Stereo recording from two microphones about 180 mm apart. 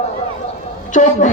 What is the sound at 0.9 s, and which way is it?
Speech, 45° left (ahead or behind).